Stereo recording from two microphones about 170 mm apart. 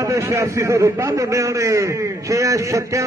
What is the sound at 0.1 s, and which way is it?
A man's voice, 20° right (ahead or behind).